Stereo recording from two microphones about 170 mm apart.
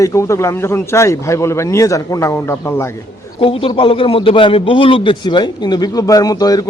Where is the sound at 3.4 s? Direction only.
30° left (ahead or behind).